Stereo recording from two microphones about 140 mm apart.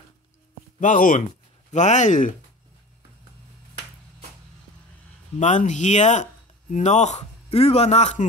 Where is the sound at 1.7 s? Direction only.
55° left (ahead or behind).